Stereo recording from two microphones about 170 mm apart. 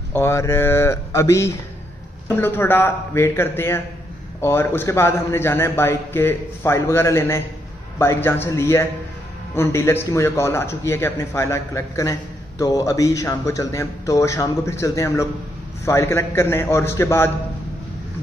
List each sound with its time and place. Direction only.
0.1 s speech: 15° left (ahead or behind)